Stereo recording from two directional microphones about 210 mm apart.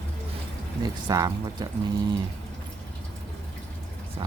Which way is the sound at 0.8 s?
20° right (ahead or behind).